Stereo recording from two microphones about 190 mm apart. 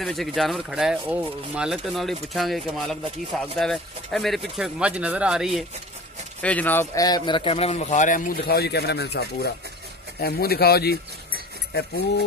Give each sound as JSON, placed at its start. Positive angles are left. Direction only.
{"t": 0.0, "sound": "speech", "side_deg": 0}
{"t": 6.4, "sound": "a man's voice", "side_deg": 10}